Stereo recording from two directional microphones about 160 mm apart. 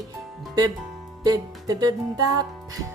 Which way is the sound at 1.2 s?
25° right (ahead or behind).